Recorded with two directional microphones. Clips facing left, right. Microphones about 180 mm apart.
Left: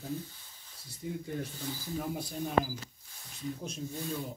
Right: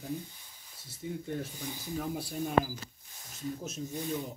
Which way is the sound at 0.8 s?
Centre (ahead or behind).